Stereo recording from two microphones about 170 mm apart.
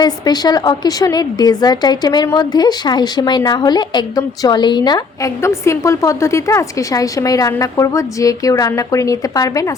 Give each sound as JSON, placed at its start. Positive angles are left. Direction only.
{"t": 0.0, "sound": "a woman's voice", "side_deg": 25}